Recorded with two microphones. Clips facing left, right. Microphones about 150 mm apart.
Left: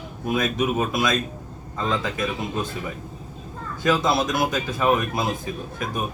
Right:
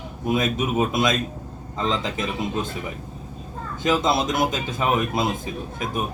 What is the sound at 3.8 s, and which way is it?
Speech, 20° right (ahead or behind).